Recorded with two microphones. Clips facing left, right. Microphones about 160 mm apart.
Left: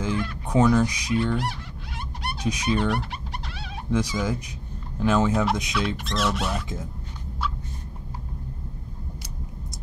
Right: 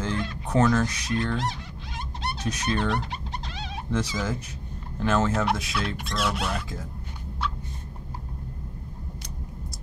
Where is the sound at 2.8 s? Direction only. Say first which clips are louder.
Left 1 dB; 20° right (ahead or behind).